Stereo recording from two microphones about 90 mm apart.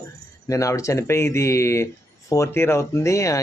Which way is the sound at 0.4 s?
35° left (ahead or behind).